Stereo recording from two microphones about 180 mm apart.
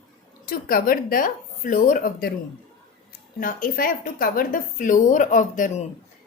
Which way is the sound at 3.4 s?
50° left (ahead or behind).